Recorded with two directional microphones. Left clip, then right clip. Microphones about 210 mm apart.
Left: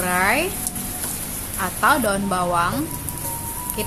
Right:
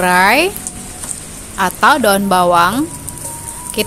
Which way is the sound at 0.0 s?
50° right (ahead or behind).